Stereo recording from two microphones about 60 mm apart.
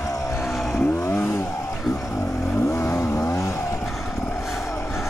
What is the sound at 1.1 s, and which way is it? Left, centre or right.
Vehicle, left.